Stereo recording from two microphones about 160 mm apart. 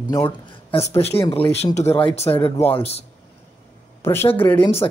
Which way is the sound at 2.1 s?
35° left (ahead or behind).